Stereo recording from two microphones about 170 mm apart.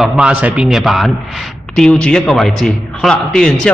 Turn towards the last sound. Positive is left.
turn(degrees=5)  # may be behind; listen again after turning